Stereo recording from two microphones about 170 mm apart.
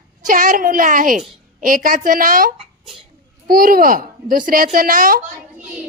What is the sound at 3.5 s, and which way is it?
Speech, 55° right (ahead or behind).